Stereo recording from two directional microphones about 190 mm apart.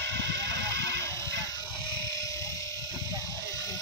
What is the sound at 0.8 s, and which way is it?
Goat, 15° left (ahead or behind).